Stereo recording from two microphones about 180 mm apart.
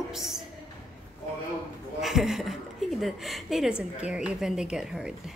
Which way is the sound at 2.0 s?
Centre (ahead or behind).